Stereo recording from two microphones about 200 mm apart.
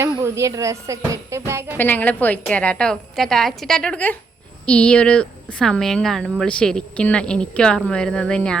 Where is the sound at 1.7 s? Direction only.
10° left (ahead or behind).